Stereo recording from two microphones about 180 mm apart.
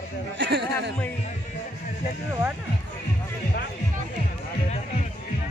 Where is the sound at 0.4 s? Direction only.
65° right (ahead or behind).